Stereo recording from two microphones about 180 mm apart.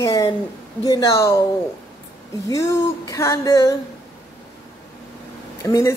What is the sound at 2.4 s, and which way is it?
Speech, 15° left (ahead or behind).